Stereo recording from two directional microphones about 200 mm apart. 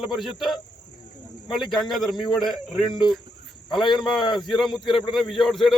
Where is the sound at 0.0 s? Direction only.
Centre (ahead or behind).